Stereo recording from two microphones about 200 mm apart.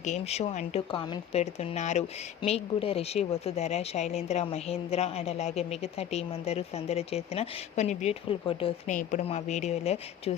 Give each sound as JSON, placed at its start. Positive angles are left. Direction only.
{"t": 0.0, "sound": "speech", "side_deg": 35}